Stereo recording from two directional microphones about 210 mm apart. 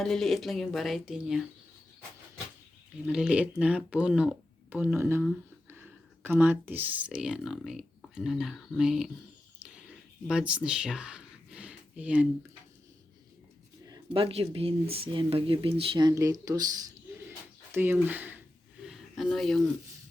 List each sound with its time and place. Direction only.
0.0 s speech: centre (ahead or behind)
3.1 s speech: 5° right (ahead or behind)
10.2 s speech: 5° right (ahead or behind)
13.8 s speech: 20° right (ahead or behind)
18.8 s a sound: centre (ahead or behind)